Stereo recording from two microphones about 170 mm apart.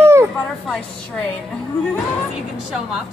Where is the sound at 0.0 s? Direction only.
15° right (ahead or behind).